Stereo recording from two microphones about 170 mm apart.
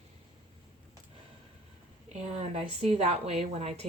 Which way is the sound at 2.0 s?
40° right (ahead or behind).